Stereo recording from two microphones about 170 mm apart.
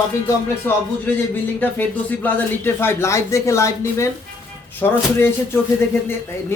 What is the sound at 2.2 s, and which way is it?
Speech, 10° left (ahead or behind).